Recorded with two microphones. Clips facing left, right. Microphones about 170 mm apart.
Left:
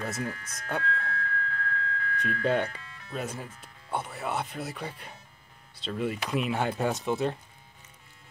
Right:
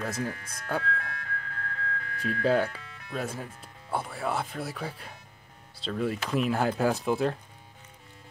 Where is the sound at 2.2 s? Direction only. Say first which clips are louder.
Right 2 dB; centre (ahead or behind).